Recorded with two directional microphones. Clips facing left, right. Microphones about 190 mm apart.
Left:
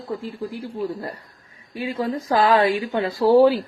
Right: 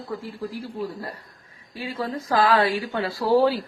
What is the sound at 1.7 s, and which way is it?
Speech, 20° left (ahead or behind).